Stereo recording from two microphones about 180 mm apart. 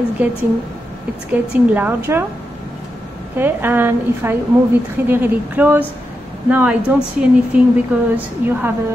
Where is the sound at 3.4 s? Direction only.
10° right (ahead or behind).